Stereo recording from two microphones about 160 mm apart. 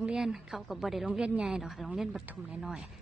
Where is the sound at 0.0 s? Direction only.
5° right (ahead or behind).